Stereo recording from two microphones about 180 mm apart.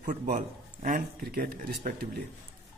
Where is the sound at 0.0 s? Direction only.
45° right (ahead or behind).